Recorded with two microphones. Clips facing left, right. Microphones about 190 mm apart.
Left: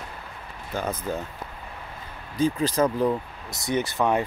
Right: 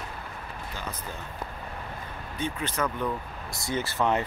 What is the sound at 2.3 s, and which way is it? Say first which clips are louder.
Speech: left 8 dB; 35° left (ahead or behind).